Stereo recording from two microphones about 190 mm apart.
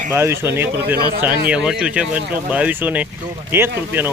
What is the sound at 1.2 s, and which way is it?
Speech, 5° right (ahead or behind).